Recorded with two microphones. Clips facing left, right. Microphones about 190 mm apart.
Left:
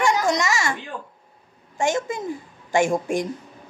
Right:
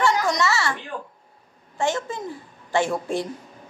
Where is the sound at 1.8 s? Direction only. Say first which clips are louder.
Left 2 dB; 15° left (ahead or behind).